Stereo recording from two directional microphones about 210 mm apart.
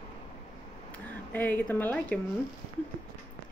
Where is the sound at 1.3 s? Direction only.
10° left (ahead or behind).